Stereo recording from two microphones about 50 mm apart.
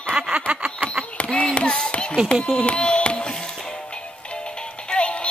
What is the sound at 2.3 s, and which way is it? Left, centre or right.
Music, centre.